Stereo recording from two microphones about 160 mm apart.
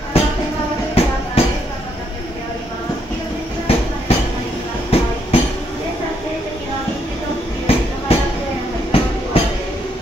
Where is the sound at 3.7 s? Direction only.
35° left (ahead or behind).